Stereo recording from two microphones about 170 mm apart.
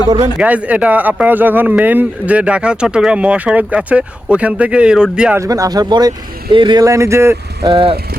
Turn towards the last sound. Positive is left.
turn(degrees=-30)  # may be behind; listen again after turning